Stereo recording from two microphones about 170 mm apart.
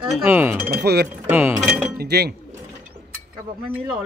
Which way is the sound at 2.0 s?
70° right (ahead or behind).